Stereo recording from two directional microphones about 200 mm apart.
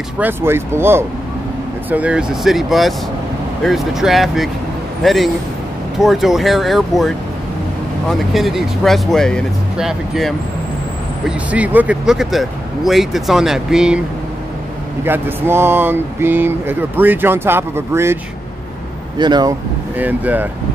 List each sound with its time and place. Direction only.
0.2 s speech: 10° right (ahead or behind)
15.0 s speech: 10° right (ahead or behind)
20.0 s speech: 10° right (ahead or behind)